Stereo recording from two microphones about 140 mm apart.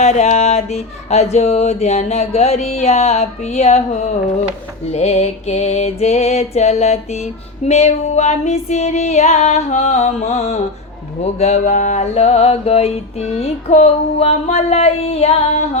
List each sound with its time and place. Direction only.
0.0 s mantra: 55° left (ahead or behind)